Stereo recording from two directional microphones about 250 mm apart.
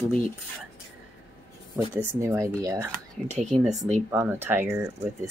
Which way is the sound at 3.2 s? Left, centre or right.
Right.